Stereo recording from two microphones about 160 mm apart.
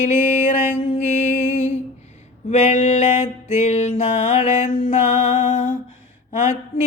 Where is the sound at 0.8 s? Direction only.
30° left (ahead or behind).